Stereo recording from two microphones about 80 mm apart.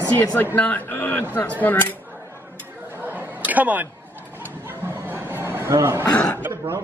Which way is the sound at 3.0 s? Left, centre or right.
Right.